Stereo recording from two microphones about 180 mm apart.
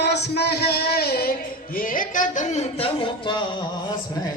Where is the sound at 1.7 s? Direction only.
50° left (ahead or behind); by 3.4 s 25° left (ahead or behind).